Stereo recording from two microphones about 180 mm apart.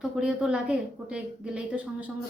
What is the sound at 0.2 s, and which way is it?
Speech, 5° right (ahead or behind).